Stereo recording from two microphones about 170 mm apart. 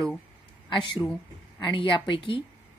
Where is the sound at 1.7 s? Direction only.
30° left (ahead or behind).